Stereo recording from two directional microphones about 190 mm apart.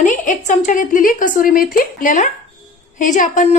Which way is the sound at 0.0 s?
40° left (ahead or behind).